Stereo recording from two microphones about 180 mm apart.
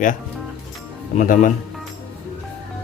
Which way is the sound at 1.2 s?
45° left (ahead or behind).